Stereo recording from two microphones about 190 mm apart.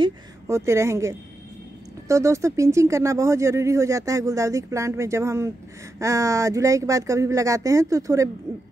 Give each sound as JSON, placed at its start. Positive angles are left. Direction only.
{"t": 0.0, "sound": "speech", "side_deg": -15}